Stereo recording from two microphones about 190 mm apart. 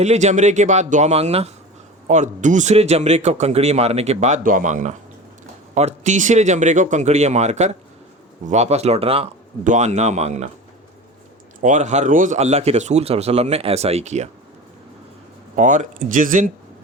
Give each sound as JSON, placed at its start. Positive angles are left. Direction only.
{"t": 0.0, "sound": "a man's voice", "side_deg": -35}
{"t": 11.6, "sound": "a man's voice", "side_deg": -40}
{"t": 15.5, "sound": "a man's voice", "side_deg": -40}